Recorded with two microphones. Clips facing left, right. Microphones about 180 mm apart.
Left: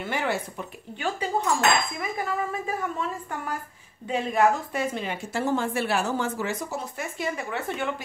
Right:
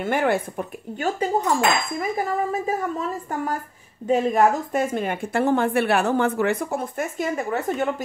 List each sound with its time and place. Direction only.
0.0 s a woman's voice: 55° right (ahead or behind)